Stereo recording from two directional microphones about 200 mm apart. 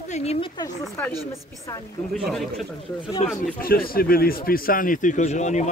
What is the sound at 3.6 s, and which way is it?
Speech, 45° left (ahead or behind).